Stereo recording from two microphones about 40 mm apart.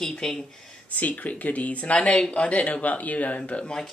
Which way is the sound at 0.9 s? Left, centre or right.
Left.